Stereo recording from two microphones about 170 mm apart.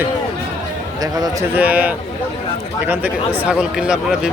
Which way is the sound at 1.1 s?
20° right (ahead or behind).